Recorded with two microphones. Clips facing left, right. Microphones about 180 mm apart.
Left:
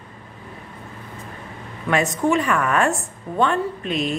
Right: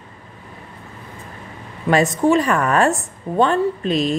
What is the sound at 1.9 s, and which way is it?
A woman's voice, 35° right (ahead or behind).